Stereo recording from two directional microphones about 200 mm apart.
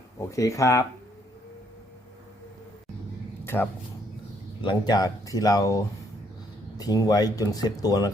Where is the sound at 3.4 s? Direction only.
10° left (ahead or behind).